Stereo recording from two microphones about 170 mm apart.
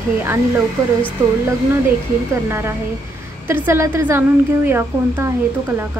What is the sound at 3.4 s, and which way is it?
A woman's voice, 15° right (ahead or behind).